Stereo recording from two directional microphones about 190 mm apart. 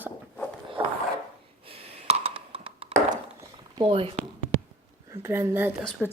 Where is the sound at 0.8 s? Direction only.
30° right (ahead or behind).